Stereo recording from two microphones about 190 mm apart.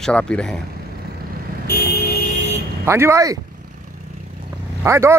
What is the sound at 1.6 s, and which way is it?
Vehicle, 55° left (ahead or behind).